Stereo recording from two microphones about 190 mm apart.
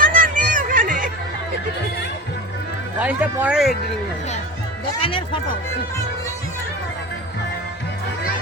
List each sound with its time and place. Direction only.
0.0 s a sound: 45° right (ahead or behind)
3.0 s speech: 10° right (ahead or behind)
4.9 s speech: 30° left (ahead or behind)